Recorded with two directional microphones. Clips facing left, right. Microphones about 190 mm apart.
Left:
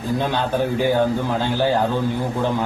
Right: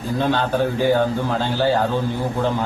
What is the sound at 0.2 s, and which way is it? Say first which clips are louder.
A man's voice: right 4 dB; 15° left (ahead or behind).